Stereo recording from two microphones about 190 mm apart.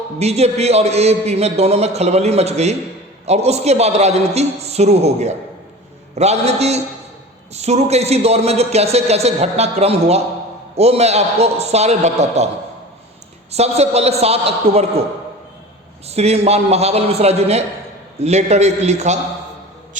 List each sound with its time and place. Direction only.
0.2 s a man's voice: 35° right (ahead or behind)
13.5 s a man's voice: 35° right (ahead or behind)
16.0 s a man's voice: 35° right (ahead or behind)